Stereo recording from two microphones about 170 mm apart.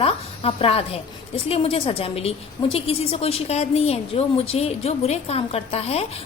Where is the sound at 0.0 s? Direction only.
35° left (ahead or behind).